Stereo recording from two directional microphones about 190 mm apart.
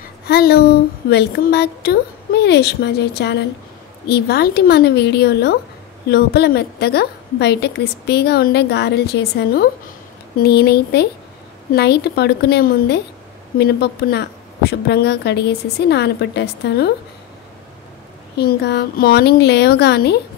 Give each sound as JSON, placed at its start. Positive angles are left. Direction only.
{"t": 0.3, "sound": "a woman's voice", "side_deg": 55}
{"t": 18.4, "sound": "a woman's voice", "side_deg": 60}